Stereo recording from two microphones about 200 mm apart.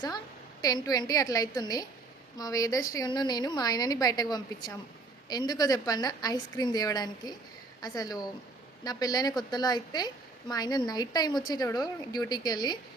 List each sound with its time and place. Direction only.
0.6 s a woman's voice: 20° left (ahead or behind)